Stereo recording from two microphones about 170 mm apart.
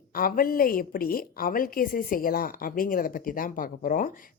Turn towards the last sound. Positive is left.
turn(degrees=55)  # may be behind; listen again after turning